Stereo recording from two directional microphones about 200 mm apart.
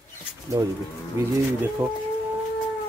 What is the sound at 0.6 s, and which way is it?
Speech, 20° right (ahead or behind).